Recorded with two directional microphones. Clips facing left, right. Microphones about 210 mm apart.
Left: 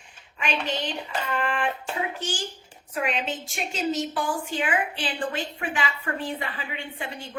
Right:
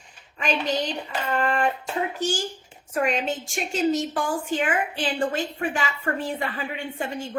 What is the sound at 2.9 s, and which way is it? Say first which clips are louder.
A woman's voice: right 4 dB; 45° right (ahead or behind).